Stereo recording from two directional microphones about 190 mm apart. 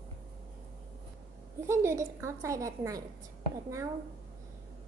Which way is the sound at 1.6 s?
15° right (ahead or behind).